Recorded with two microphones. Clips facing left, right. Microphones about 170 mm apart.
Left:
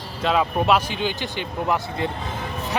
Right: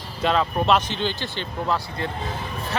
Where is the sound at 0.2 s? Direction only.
5° left (ahead or behind).